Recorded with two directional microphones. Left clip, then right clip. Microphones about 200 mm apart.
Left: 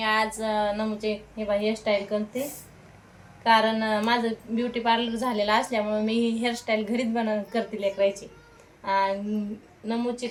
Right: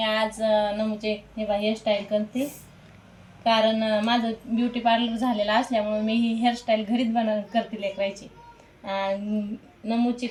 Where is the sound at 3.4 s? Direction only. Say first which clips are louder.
Even; 20° left (ahead or behind).